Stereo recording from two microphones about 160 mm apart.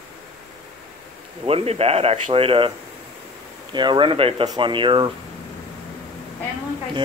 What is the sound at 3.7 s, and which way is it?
Speech, 30° right (ahead or behind).